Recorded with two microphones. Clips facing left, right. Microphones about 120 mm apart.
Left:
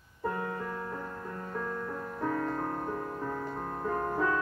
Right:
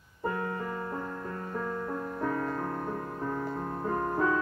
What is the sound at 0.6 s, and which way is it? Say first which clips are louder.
Music: right 2 dB; 10° right (ahead or behind).